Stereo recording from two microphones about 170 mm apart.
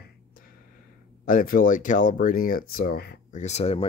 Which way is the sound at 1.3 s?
55° left (ahead or behind).